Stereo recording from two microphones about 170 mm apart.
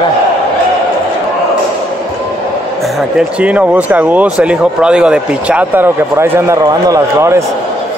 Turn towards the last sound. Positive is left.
turn(degrees=-15)  # may be behind; listen again after turning